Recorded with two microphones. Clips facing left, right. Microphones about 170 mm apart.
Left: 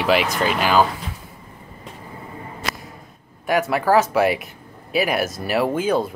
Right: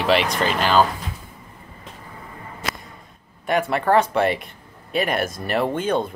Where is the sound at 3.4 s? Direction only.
5° left (ahead or behind).